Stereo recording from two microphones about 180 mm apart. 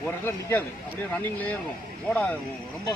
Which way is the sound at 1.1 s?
10° left (ahead or behind).